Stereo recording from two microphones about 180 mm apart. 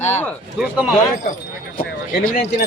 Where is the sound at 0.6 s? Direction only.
5° right (ahead or behind).